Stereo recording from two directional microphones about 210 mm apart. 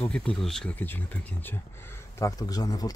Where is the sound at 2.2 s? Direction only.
15° left (ahead or behind).